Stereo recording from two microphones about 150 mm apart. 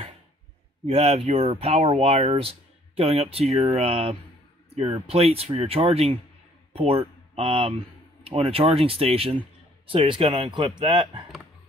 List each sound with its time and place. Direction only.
0.8 s a man's voice: 45° right (ahead or behind)